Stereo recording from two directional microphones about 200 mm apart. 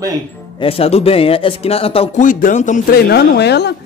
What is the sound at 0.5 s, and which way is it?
A man's voice, 30° left (ahead or behind).